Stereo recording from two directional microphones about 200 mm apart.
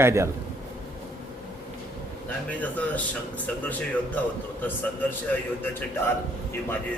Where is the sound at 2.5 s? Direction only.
10° left (ahead or behind).